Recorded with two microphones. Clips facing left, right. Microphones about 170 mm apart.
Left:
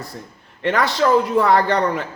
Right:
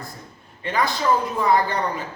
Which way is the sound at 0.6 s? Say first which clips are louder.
Left 5 dB; 75° left (ahead or behind).